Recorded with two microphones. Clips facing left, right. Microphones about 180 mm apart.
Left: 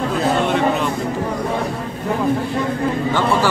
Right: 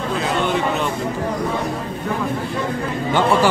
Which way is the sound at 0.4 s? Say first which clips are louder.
Left 2 dB; centre (ahead or behind).